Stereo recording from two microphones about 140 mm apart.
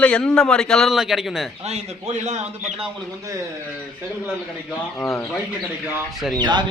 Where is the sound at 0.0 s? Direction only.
5° left (ahead or behind).